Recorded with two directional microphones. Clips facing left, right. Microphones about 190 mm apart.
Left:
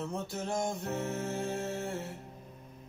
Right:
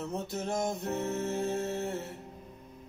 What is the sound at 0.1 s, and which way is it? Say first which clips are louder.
Music: right 2 dB; 20° right (ahead or behind).